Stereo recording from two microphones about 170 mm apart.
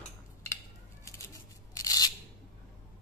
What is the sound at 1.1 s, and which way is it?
Scissors, 15° left (ahead or behind).